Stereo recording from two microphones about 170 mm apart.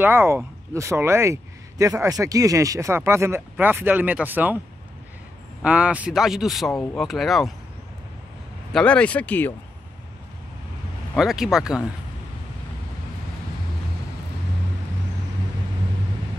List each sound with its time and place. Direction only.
0.0 s speech: 15° right (ahead or behind)
5.6 s a man's voice: 5° right (ahead or behind)
6.7 s speech: 15° left (ahead or behind)
7.0 s a man's voice: centre (ahead or behind)
8.7 s speech: 5° left (ahead or behind)
11.1 s a man's voice: centre (ahead or behind)